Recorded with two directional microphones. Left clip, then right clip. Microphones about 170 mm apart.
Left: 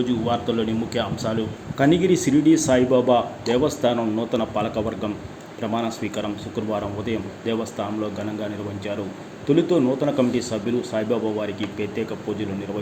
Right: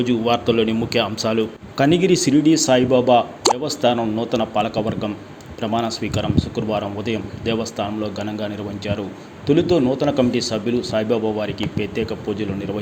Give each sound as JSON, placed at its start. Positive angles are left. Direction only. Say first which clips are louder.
{"t": 0.0, "sound": "speech", "louder": "right 5 dB", "side_deg": -35}
{"t": 9.5, "sound": "speech", "louder": "right 2 dB", "side_deg": -35}